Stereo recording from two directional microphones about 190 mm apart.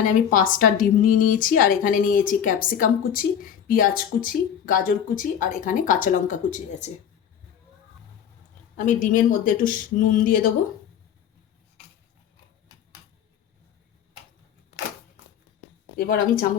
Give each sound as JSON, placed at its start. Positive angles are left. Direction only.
{"t": 0.0, "sound": "a woman's voice", "side_deg": 45}
{"t": 8.7, "sound": "a woman's voice", "side_deg": 45}
{"t": 16.0, "sound": "a woman's voice", "side_deg": 50}